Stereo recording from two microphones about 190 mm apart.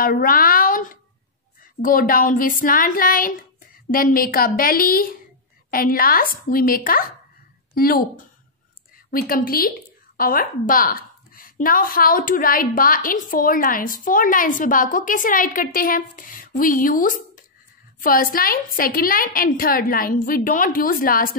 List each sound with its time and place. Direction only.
0.0 s a child's voice: 50° left (ahead or behind)
9.1 s a woman's voice: 50° left (ahead or behind)